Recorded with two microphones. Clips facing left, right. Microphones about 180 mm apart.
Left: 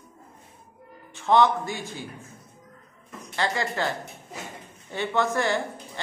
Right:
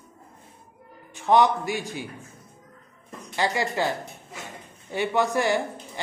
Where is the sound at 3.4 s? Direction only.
15° right (ahead or behind).